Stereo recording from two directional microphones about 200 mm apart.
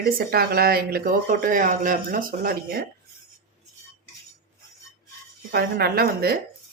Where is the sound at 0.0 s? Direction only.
50° right (ahead or behind).